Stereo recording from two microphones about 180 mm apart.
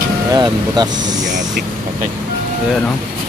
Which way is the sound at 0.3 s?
20° right (ahead or behind).